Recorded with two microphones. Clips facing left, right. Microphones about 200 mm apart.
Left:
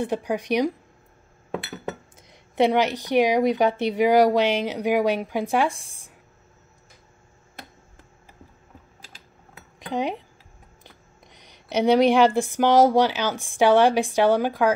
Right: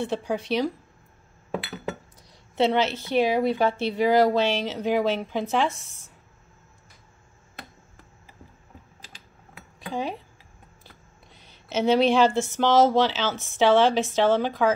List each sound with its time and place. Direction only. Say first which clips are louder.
0.0 s a woman's voice: left 2 dB; 10° left (ahead or behind)
2.2 s a woman's voice: left 2 dB; 15° left (ahead or behind)
9.8 s speech: left 3 dB; 20° left (ahead or behind)
11.3 s a woman's voice: left 3 dB; 15° left (ahead or behind)